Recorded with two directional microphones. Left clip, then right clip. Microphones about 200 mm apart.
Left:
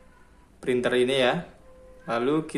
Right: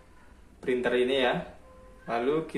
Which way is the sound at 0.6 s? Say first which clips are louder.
Left 3 dB; 50° left (ahead or behind).